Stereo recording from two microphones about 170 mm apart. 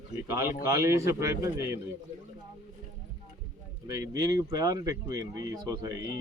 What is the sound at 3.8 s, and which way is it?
Speech, 20° right (ahead or behind).